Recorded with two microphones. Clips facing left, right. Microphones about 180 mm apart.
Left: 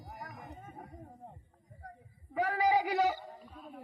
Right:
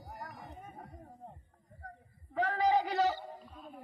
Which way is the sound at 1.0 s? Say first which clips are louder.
Even; 10° left (ahead or behind).